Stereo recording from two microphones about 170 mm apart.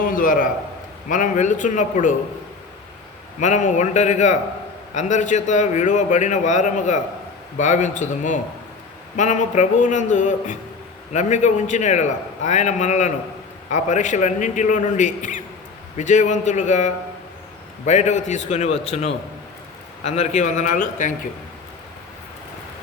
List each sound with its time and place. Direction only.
0.0 s a sound: 55° left (ahead or behind)
1.0 s a man's voice: 50° left (ahead or behind)
3.4 s a man's voice: 45° left (ahead or behind)